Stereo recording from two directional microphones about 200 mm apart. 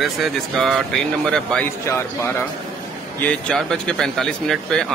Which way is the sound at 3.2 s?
5° left (ahead or behind).